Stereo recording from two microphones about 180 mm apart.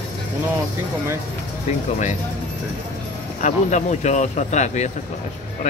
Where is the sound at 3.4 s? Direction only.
40° left (ahead or behind).